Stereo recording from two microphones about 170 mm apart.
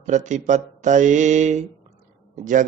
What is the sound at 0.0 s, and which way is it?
Speech, 45° right (ahead or behind).